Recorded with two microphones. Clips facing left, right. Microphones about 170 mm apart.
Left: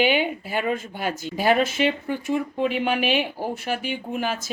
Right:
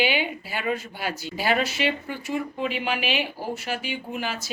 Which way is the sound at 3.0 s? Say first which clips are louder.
Left 4 dB; 50° left (ahead or behind).